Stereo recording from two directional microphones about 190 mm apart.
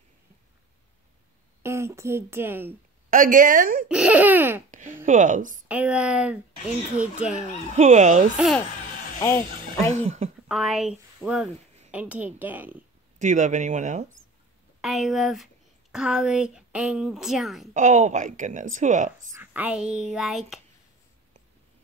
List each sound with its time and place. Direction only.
1.6 s speech: 15° right (ahead or behind)
3.1 s speech: 45° right (ahead or behind)
3.9 s a woman's voice: 5° right (ahead or behind)
4.6 s speech: 40° right (ahead or behind)
5.7 s speech: 5° right (ahead or behind)
7.7 s a woman's voice: 40° right (ahead or behind)
9.2 s speech: 15° left (ahead or behind)
9.9 s a woman's voice: 35° right (ahead or behind)
10.5 s a woman's voice: centre (ahead or behind)
13.2 s a woman's voice: 40° right (ahead or behind)
14.8 s speech: centre (ahead or behind)
17.7 s a woman's voice: 40° right (ahead or behind)
19.3 s speech: 10° right (ahead or behind)